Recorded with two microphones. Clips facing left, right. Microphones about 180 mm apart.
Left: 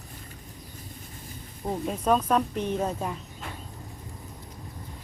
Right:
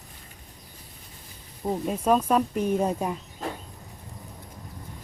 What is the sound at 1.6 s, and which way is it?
Speech, 5° right (ahead or behind).